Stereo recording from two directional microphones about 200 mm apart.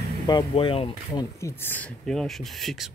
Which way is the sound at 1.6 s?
10° left (ahead or behind).